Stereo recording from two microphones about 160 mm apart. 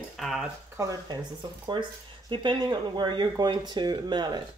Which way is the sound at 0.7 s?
20° right (ahead or behind).